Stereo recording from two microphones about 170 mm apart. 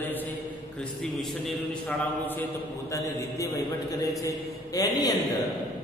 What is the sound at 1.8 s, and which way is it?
A man's voice, 10° left (ahead or behind).